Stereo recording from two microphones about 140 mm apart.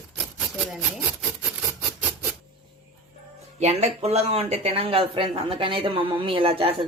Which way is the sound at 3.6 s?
50° right (ahead or behind).